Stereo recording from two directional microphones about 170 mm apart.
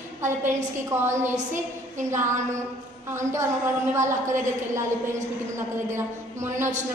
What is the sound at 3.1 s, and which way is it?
Speech, 15° right (ahead or behind).